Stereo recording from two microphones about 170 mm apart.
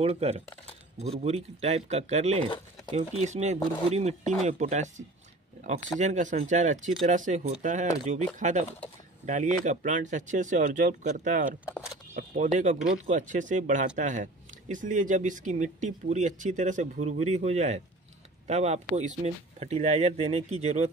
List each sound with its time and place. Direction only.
0.0 s speech: 35° right (ahead or behind)